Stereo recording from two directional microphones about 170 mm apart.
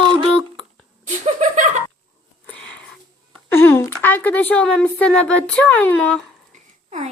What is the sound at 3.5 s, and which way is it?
A woman's voice, 15° left (ahead or behind).